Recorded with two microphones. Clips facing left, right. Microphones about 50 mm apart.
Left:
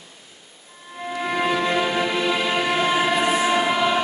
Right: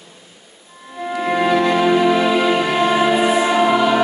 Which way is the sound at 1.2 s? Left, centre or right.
Centre.